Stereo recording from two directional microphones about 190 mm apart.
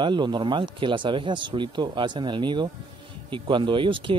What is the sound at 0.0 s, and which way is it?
Speech, 25° right (ahead or behind).